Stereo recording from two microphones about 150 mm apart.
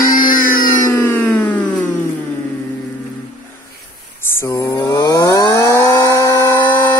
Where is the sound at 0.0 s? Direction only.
70° left (ahead or behind).